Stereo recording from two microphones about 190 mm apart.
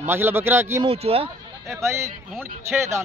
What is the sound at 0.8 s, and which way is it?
Speech, 30° right (ahead or behind).